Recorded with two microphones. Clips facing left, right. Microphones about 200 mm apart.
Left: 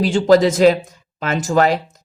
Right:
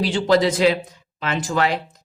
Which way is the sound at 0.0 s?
45° left (ahead or behind).